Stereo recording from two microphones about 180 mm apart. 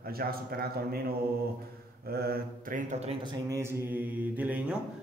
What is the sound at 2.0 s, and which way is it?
Mantra, 60° right (ahead or behind).